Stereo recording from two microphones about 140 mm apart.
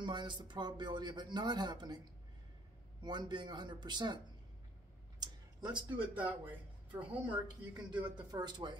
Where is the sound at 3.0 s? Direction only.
30° right (ahead or behind).